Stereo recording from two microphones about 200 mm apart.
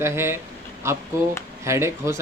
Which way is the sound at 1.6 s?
15° right (ahead or behind).